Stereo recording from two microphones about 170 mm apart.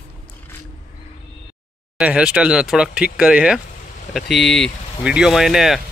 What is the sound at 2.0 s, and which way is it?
Speech, 5° right (ahead or behind).